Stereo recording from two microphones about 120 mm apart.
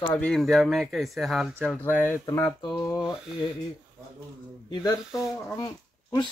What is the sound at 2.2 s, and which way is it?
Speech, 30° left (ahead or behind).